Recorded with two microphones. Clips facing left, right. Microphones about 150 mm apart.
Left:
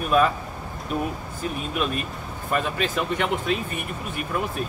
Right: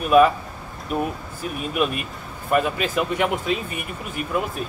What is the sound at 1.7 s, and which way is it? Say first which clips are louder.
Speech: right 6 dB; 10° right (ahead or behind).